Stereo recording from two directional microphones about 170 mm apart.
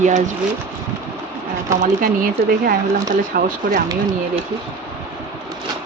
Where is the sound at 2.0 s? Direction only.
60° right (ahead or behind).